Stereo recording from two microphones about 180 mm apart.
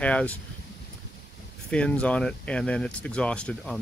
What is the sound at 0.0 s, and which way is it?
Speech, 5° left (ahead or behind).